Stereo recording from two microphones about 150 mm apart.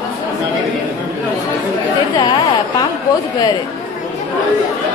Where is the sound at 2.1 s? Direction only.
30° left (ahead or behind).